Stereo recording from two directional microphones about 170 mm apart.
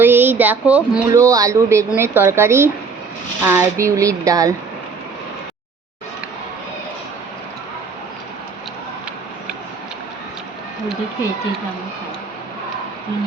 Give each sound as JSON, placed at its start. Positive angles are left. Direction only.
{"t": 0.0, "sound": "speech", "side_deg": -10}
{"t": 1.1, "sound": "speech", "side_deg": -20}